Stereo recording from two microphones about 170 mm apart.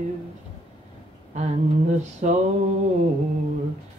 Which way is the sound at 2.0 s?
45° right (ahead or behind).